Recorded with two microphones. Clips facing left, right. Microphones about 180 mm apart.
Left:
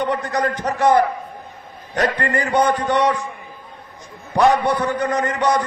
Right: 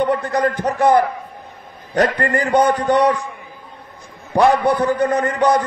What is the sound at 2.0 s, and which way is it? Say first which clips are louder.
Speech: right 2 dB; 35° right (ahead or behind).